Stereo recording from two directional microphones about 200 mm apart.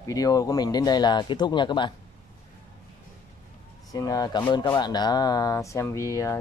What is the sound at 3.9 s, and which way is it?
Speech, 20° left (ahead or behind).